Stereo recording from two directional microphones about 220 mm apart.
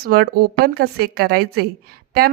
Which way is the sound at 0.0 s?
45° right (ahead or behind).